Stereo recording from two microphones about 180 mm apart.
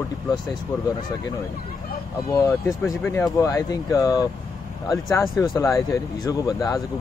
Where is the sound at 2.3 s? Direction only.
15° left (ahead or behind).